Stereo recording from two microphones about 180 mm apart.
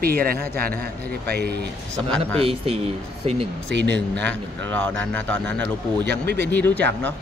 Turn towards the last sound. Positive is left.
turn(degrees=10)  # may be behind; listen again after turning